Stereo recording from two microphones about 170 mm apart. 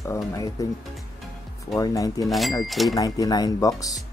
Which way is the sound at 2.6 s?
Centre (ahead or behind).